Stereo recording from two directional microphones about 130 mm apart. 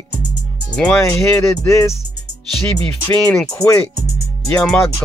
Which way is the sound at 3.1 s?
10° left (ahead or behind).